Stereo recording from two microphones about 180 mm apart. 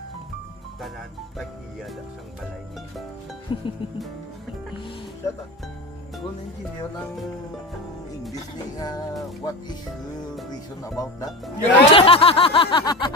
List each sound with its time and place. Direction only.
3.5 s music: 25° left (ahead or behind)
5.2 s speech: 15° left (ahead or behind)
8.8 s music: 20° left (ahead or behind)
11.3 s speech: centre (ahead or behind)
11.9 s snicker: 30° left (ahead or behind)